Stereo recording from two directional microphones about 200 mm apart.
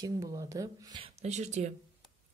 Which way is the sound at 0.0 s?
15° right (ahead or behind).